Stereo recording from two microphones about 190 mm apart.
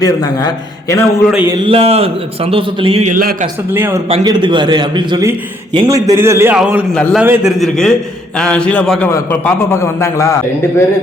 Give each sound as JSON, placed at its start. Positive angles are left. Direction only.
{"t": 0.0, "sound": "a man's voice", "side_deg": 20}
{"t": 1.3, "sound": "a man's voice", "side_deg": -10}
{"t": 1.6, "sound": "a man's voice", "side_deg": -30}
{"t": 3.2, "sound": "a man's voice", "side_deg": -45}
{"t": 3.7, "sound": "a man's voice", "side_deg": -10}
{"t": 4.1, "sound": "a man's voice", "side_deg": -25}